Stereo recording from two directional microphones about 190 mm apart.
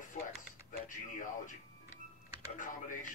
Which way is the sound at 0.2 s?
40° left (ahead or behind).